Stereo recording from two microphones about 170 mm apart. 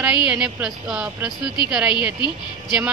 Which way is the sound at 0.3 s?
5° right (ahead or behind).